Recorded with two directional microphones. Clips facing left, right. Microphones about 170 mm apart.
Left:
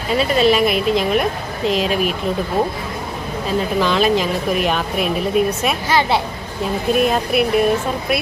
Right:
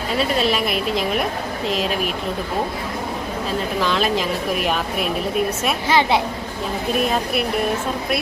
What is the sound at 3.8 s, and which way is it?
Speech, centre (ahead or behind).